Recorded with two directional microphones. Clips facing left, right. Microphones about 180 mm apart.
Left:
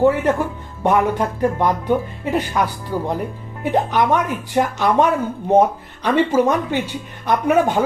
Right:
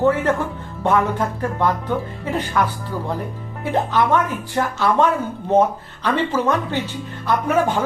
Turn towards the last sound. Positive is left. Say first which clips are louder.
# left 3 dB
turn(degrees=15)  # may be behind; listen again after turning